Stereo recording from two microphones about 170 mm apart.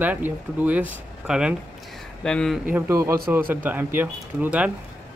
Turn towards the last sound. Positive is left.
turn(degrees=-10)  # may be behind; listen again after turning